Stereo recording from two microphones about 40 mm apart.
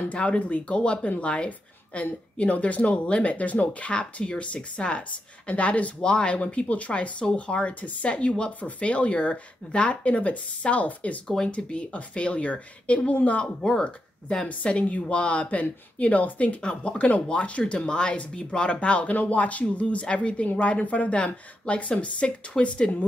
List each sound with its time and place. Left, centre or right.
0.1 s speech: left
11.2 s speech: centre
11.5 s speech: left
13.6 s speech: centre
14.6 s speech: left